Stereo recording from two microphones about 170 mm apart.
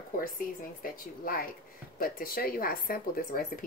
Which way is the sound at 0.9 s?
60° left (ahead or behind).